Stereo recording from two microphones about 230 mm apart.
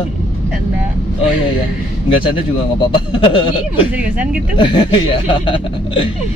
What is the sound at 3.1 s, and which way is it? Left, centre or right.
Speech, left.